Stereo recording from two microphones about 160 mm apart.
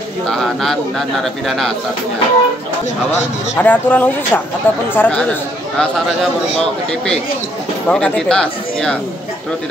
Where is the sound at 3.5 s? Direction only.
10° left (ahead or behind).